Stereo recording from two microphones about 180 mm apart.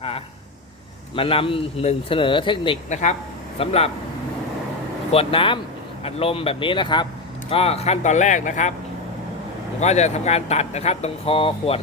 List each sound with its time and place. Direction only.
1.1 s speech: 30° left (ahead or behind)
2.9 s speech: 40° left (ahead or behind)
5.1 s speech: 30° left (ahead or behind)
9.8 s speech: 40° left (ahead or behind)